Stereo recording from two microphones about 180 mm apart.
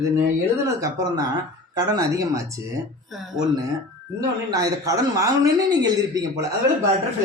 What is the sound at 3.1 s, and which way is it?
Speech, centre (ahead or behind).